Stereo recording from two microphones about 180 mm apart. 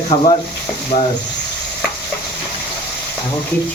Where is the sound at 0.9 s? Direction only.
50° left (ahead or behind).